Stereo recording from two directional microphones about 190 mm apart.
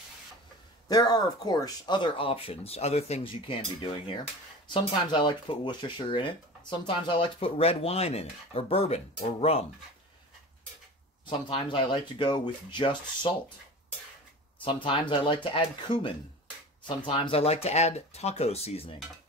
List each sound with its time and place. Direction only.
0.8 s speech: 20° left (ahead or behind)
11.2 s speech: 25° left (ahead or behind)
14.6 s speech: 25° left (ahead or behind)